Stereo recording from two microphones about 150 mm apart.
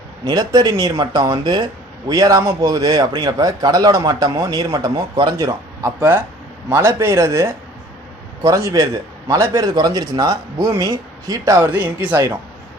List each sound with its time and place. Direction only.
0.3 s a man's voice: 25° right (ahead or behind)
5.5 s a man's voice: 20° right (ahead or behind)